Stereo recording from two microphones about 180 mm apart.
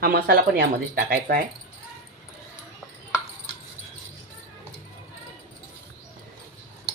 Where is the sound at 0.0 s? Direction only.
60° right (ahead or behind).